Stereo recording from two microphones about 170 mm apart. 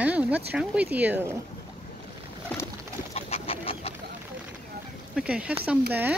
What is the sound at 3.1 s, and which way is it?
Bird, 35° left (ahead or behind).